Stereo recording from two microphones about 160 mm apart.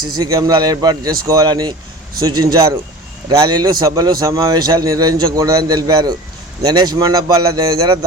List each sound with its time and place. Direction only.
0.2 s a man's voice: 20° right (ahead or behind)